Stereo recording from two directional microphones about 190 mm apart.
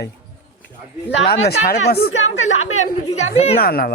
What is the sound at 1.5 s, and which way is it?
Speech, 55° left (ahead or behind).